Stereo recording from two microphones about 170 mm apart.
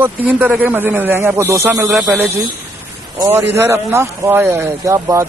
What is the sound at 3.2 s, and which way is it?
Speech, 15° right (ahead or behind).